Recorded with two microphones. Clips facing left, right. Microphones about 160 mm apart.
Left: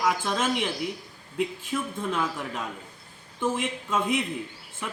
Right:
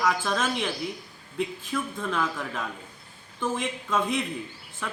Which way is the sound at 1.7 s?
15° left (ahead or behind).